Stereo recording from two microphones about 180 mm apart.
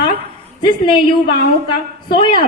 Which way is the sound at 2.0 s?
25° left (ahead or behind).